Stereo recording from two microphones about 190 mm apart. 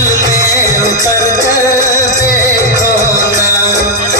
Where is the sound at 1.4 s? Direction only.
15° right (ahead or behind).